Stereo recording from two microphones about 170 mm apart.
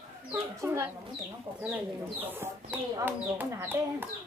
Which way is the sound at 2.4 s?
10° right (ahead or behind).